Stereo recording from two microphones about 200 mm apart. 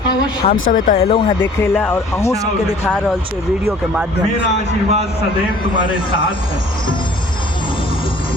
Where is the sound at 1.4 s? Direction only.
10° left (ahead or behind).